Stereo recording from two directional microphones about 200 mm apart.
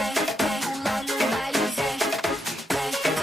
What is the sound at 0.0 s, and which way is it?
Music, centre (ahead or behind).